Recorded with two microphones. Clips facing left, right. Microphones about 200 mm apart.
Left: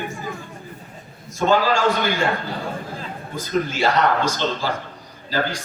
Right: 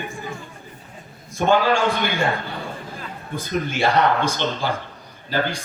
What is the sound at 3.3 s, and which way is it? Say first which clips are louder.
Speech: left 1 dB; 55° right (ahead or behind).